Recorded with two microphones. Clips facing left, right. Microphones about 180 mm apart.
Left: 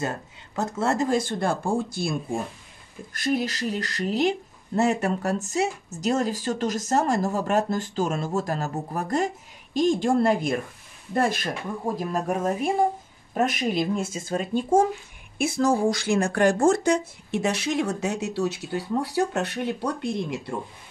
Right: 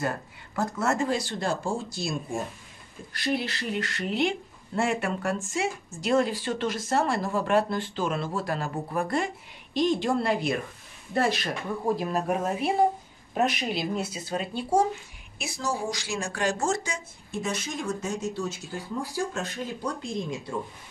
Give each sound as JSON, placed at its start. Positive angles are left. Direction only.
{"t": 0.6, "sound": "speech", "side_deg": 25}
{"t": 0.9, "sound": "speech", "side_deg": 45}
{"t": 3.1, "sound": "speech", "side_deg": 45}